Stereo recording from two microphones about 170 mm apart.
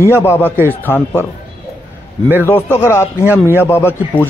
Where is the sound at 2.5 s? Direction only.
15° left (ahead or behind).